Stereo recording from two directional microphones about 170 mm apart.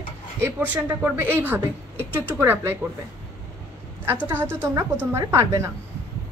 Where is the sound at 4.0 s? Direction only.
15° right (ahead or behind).